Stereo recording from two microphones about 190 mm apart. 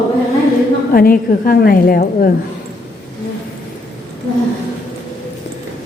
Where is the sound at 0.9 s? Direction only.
50° left (ahead or behind).